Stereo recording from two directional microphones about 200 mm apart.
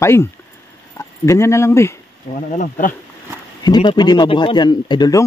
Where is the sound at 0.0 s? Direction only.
15° left (ahead or behind).